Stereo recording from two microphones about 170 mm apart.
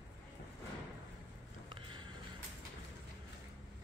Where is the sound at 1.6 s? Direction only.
30° right (ahead or behind).